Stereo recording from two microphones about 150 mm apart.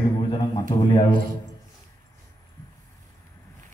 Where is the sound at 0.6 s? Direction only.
25° left (ahead or behind).